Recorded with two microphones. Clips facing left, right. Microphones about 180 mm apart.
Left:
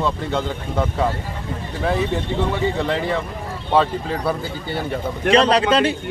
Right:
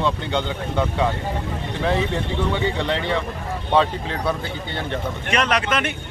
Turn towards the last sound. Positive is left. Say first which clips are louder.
# left 6 dB
turn(degrees=30)  # may be behind; listen again after turning